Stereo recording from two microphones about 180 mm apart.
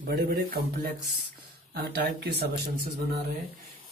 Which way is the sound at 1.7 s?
60° right (ahead or behind).